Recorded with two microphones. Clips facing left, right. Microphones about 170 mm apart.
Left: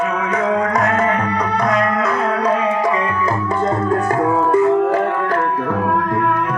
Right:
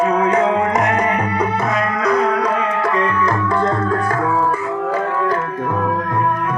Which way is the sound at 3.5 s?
20° left (ahead or behind).